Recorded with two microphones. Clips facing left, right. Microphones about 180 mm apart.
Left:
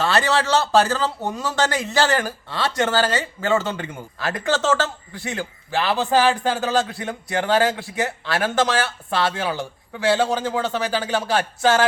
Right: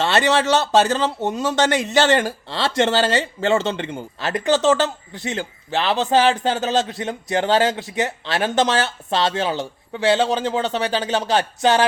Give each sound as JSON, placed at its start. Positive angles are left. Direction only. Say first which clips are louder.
{"t": 0.0, "sound": "a man's voice", "louder": "right 2 dB", "side_deg": -20}